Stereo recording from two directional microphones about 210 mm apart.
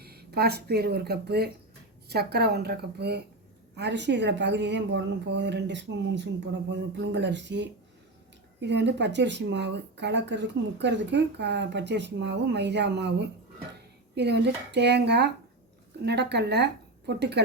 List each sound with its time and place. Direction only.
0.0 s a woman's voice: 50° right (ahead or behind)